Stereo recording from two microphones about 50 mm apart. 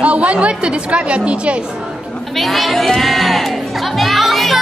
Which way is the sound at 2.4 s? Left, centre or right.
Centre.